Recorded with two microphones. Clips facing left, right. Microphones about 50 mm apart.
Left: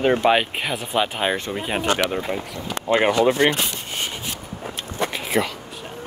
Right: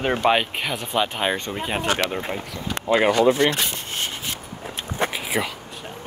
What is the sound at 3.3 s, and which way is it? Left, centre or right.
Speech, left.